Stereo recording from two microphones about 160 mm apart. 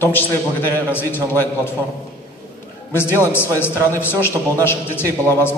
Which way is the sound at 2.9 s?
15° left (ahead or behind).